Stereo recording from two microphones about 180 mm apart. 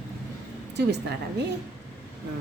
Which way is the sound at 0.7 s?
70° right (ahead or behind).